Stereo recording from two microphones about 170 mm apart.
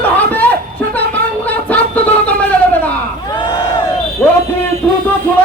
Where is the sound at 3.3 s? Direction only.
25° left (ahead or behind).